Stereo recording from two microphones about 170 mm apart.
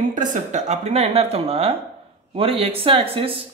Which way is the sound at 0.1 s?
50° right (ahead or behind).